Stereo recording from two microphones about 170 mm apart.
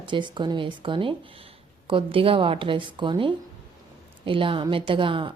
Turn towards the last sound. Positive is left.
turn(degrees=-30)  # may be behind; listen again after turning